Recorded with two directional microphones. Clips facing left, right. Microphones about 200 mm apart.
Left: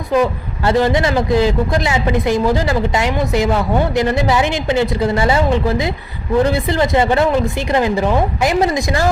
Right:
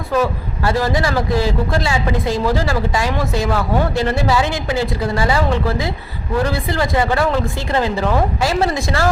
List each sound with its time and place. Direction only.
0.1 s a man's voice: 20° left (ahead or behind)